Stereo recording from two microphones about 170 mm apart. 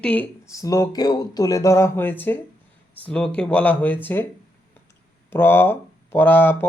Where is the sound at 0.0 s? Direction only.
10° left (ahead or behind).